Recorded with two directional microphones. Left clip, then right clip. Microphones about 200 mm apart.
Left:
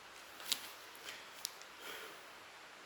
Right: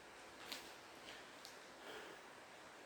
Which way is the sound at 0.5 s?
50° left (ahead or behind).